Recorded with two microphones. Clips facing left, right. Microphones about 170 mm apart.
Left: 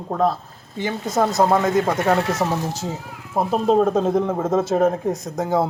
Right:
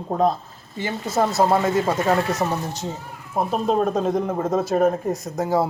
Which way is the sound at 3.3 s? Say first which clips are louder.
Left 3 dB; 30° left (ahead or behind).